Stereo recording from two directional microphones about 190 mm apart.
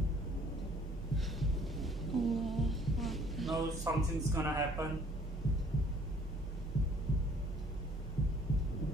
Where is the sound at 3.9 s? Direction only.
15° right (ahead or behind).